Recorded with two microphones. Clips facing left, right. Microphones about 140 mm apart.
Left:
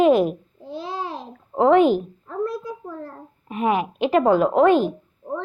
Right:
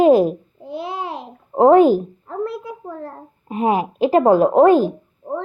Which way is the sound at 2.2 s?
25° right (ahead or behind).